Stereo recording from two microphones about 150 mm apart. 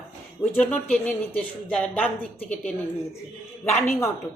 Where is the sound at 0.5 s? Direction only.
10° left (ahead or behind).